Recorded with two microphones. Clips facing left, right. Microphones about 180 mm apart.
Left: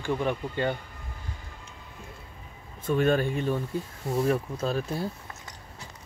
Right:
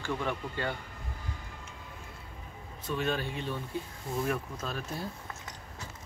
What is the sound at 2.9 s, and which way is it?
Speech, 50° left (ahead or behind).